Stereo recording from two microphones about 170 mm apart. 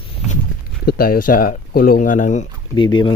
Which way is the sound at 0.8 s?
60° left (ahead or behind).